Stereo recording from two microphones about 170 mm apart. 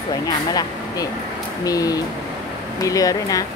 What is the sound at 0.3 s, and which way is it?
Speech, 25° left (ahead or behind).